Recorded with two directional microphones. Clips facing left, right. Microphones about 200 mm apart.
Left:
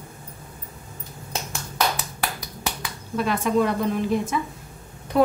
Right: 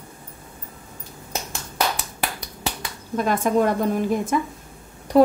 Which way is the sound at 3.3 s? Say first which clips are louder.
Right 2 dB; 45° right (ahead or behind).